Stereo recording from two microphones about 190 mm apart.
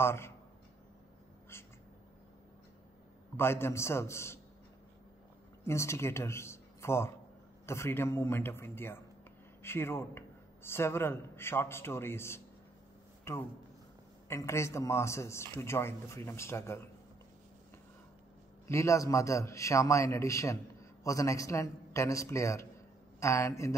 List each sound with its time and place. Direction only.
0.0 s a man's voice: 15° left (ahead or behind)
1.5 s cat: 15° left (ahead or behind)
3.3 s a man's voice: 15° left (ahead or behind)
5.7 s a man's voice: 15° left (ahead or behind)
18.7 s a man's voice: 15° left (ahead or behind)